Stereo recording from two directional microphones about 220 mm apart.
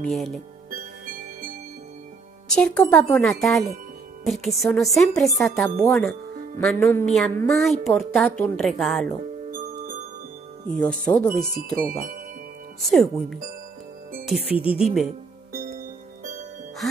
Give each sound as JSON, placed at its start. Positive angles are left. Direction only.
{"t": 0.0, "sound": "speech", "side_deg": 0}
{"t": 2.4, "sound": "speech", "side_deg": 5}
{"t": 10.8, "sound": "speech", "side_deg": 5}
{"t": 12.9, "sound": "speech", "side_deg": 0}